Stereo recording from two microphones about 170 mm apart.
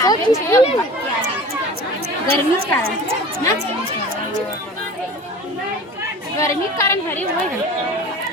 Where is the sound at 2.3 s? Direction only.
60° right (ahead or behind).